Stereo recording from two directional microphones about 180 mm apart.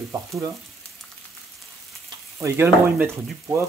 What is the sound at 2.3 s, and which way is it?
Speech, 15° right (ahead or behind).